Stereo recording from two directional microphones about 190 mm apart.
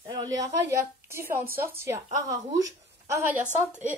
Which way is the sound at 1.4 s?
50° right (ahead or behind).